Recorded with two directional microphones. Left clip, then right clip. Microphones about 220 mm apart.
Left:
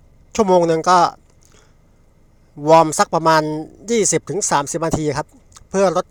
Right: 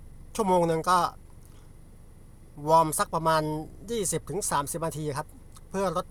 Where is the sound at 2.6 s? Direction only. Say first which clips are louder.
Left 10 dB; 30° left (ahead or behind).